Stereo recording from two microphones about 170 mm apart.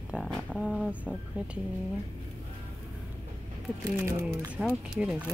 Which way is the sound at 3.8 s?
15° right (ahead or behind).